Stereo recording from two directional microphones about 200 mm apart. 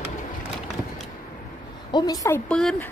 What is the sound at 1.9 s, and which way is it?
Speech, 20° left (ahead or behind).